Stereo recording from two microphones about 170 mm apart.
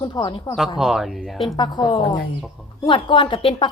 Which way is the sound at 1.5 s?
25° left (ahead or behind).